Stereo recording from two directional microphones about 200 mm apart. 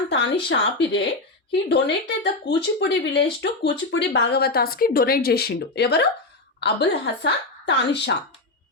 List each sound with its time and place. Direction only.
0.1 s speech: 60° left (ahead or behind)